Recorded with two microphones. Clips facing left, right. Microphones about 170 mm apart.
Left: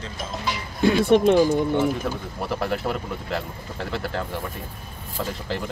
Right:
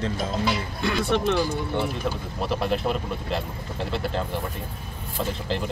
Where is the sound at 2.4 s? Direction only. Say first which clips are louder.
Right 1 dB; 20° right (ahead or behind).